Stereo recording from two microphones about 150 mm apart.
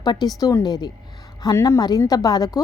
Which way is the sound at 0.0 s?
25° left (ahead or behind).